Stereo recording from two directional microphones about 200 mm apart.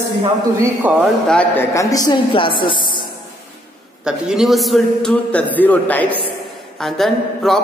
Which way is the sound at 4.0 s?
5° right (ahead or behind).